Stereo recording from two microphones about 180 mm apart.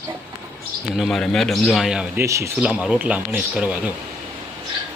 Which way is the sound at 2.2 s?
15° right (ahead or behind).